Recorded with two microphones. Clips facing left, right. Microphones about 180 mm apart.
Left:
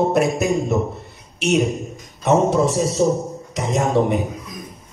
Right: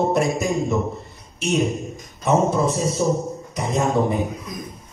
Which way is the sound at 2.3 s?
90° left.